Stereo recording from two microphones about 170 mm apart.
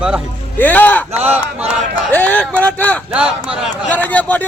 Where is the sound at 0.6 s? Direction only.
10° left (ahead or behind).